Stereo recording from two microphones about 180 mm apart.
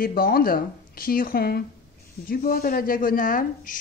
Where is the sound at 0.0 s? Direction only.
55° left (ahead or behind).